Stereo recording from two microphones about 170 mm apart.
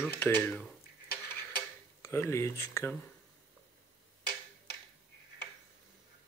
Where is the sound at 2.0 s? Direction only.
15° left (ahead or behind).